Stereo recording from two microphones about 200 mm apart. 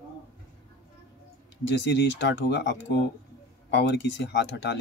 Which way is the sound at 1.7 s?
60° left (ahead or behind).